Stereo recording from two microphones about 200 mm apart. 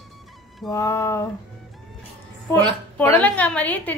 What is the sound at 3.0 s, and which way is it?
Speech, 10° left (ahead or behind).